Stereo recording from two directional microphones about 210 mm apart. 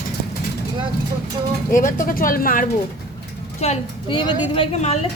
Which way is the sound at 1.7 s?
40° left (ahead or behind).